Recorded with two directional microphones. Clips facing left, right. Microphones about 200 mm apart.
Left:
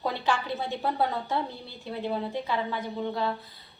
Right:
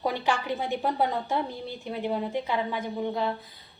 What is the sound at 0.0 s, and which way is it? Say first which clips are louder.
A woman's voice: right 1 dB; 15° right (ahead or behind).